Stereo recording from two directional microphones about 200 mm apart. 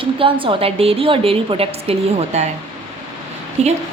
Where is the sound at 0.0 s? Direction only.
25° right (ahead or behind).